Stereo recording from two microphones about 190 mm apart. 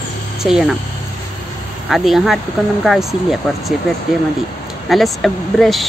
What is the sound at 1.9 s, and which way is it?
Speech, centre (ahead or behind).